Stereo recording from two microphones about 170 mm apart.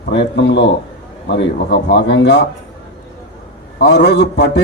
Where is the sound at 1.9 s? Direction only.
90° left.